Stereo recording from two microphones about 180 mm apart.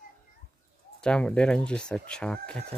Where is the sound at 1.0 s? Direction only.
5° left (ahead or behind).